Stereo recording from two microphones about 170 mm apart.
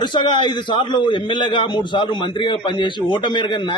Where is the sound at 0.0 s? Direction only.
25° left (ahead or behind).